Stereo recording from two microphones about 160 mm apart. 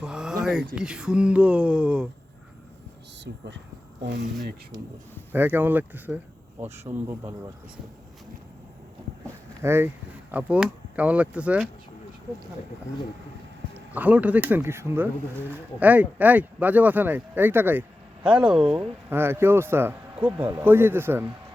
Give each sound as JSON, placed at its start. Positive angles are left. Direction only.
{"t": 0.0, "sound": "a sound", "side_deg": -5}
{"t": 0.8, "sound": "speech", "side_deg": -5}
{"t": 3.3, "sound": "speech", "side_deg": -90}
{"t": 5.3, "sound": "speech", "side_deg": -10}
{"t": 9.6, "sound": "speech", "side_deg": -15}
{"t": 13.7, "sound": "speech", "side_deg": -10}